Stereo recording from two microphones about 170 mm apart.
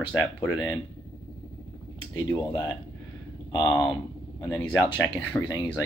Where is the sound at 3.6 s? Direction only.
20° left (ahead or behind).